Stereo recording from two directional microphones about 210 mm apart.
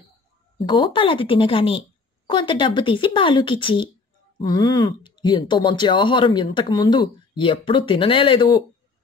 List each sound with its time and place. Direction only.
0.6 s speech: 25° left (ahead or behind)